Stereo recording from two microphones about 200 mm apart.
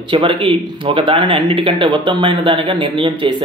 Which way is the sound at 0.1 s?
25° right (ahead or behind).